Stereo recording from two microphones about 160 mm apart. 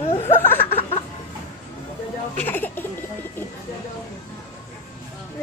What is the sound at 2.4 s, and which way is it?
Speech, 10° left (ahead or behind).